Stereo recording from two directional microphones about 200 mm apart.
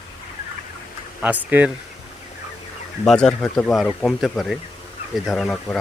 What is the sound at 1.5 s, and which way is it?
Speech, 10° right (ahead or behind).